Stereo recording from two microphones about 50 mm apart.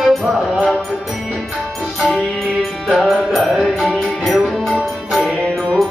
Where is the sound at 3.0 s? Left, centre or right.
Centre.